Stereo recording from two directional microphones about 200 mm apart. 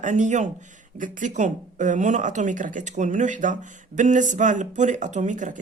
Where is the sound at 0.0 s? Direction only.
40° right (ahead or behind).